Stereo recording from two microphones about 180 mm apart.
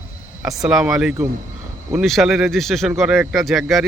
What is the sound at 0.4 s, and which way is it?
Speech, centre (ahead or behind).